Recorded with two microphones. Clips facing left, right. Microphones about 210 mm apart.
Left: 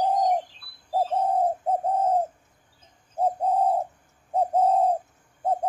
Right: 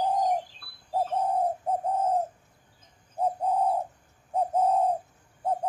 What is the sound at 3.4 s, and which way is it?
Bird, 30° left (ahead or behind).